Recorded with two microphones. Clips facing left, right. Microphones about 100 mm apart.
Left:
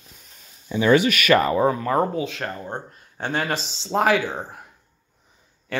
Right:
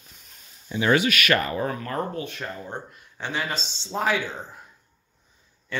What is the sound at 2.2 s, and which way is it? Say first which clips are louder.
Speech: left 6 dB; 90° left.